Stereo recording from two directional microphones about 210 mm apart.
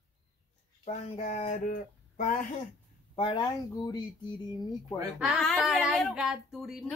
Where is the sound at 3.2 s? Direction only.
20° left (ahead or behind).